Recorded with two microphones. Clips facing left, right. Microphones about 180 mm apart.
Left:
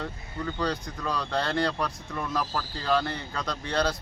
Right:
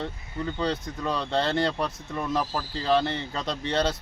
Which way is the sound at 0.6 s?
25° right (ahead or behind).